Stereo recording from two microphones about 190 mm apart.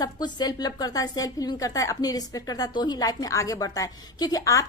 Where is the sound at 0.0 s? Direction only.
20° left (ahead or behind).